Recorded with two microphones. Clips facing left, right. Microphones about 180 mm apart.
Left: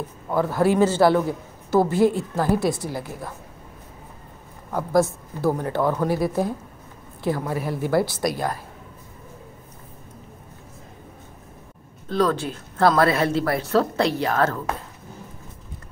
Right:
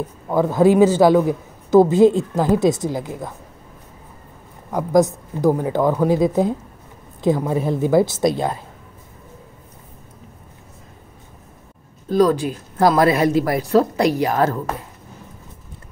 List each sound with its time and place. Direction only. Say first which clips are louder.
0.3 s a man's voice: right 5 dB; 15° right (ahead or behind)
4.7 s a man's voice: right 4 dB; 15° right (ahead or behind)
12.1 s a man's voice: right 6 dB; 10° right (ahead or behind)